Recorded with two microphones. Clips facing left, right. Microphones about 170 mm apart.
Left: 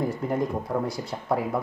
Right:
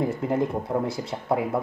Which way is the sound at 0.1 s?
25° right (ahead or behind).